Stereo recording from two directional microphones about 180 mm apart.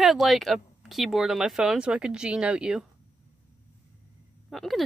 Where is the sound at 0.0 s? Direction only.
Centre (ahead or behind).